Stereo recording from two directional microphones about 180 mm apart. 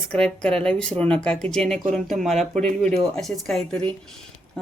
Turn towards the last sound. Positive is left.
turn(degrees=0)  # may be behind; listen again after turning